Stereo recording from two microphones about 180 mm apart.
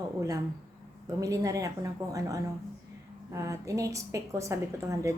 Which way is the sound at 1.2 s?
20° right (ahead or behind).